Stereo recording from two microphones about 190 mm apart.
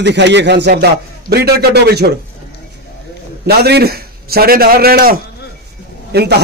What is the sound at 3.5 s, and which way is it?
A man's voice, 55° right (ahead or behind).